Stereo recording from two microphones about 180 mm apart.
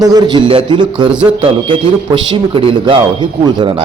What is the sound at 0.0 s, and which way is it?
A man's voice, 20° right (ahead or behind).